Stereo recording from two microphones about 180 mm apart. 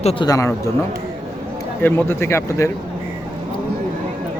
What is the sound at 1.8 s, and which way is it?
Speech, 10° left (ahead or behind).